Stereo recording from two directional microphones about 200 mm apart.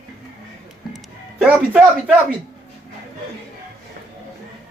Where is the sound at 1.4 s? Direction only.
5° right (ahead or behind).